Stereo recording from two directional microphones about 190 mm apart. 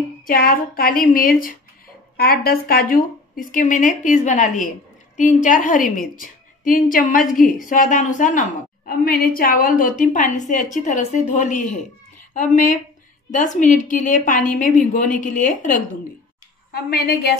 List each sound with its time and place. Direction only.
0.3 s a woman's voice: 50° left (ahead or behind)
16.7 s a woman's voice: 55° left (ahead or behind)